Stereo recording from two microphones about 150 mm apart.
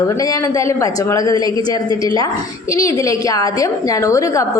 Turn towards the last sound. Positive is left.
turn(degrees=20)  # may be behind; listen again after turning